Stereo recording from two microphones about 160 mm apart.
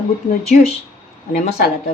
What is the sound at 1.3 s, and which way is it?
Speech, 65° left (ahead or behind).